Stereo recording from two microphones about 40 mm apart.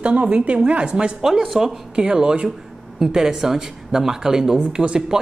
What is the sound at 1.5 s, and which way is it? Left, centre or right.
A woman's voice, centre.